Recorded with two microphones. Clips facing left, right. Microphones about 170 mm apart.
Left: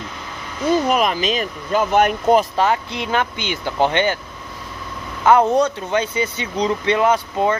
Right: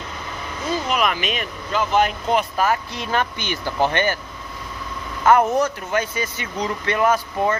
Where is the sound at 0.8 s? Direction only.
40° left (ahead or behind).